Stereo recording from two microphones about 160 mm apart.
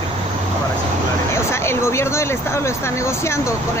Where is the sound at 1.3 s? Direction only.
15° left (ahead or behind).